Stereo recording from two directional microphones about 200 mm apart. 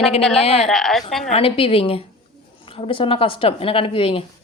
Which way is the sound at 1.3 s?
25° left (ahead or behind).